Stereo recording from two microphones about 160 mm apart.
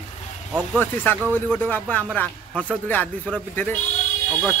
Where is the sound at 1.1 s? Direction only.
10° left (ahead or behind).